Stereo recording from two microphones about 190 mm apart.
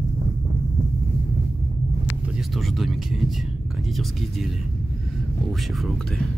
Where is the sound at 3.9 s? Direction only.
Centre (ahead or behind).